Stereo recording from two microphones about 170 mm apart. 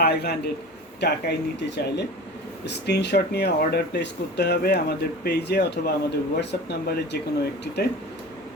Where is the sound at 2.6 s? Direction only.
80° left.